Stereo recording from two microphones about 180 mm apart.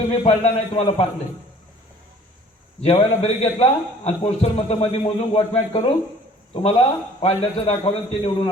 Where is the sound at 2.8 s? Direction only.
35° left (ahead or behind).